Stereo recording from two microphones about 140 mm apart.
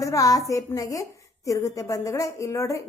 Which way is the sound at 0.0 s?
25° left (ahead or behind).